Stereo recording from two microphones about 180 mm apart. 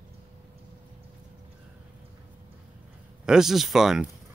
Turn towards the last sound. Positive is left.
turn(degrees=-5)  # may be behind; listen again after turning